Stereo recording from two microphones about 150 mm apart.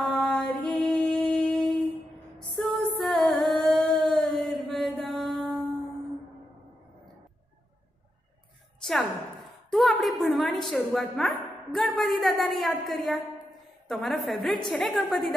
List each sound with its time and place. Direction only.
0.0 s music: 5° left (ahead or behind)
3.0 s singing: 5° left (ahead or behind)
9.7 s a woman's voice: centre (ahead or behind)